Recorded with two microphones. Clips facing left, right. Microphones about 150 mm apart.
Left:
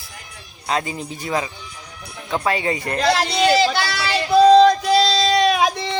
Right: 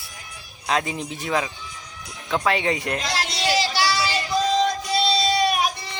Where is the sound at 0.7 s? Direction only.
Centre (ahead or behind).